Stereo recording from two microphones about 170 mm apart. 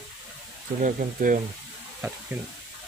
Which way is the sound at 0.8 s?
50° right (ahead or behind).